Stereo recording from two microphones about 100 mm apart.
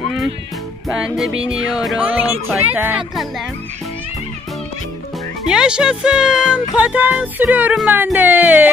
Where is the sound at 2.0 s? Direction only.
15° right (ahead or behind).